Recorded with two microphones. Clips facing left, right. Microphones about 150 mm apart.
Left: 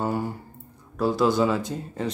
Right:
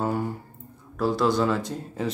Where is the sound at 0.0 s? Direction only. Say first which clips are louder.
Even; centre (ahead or behind).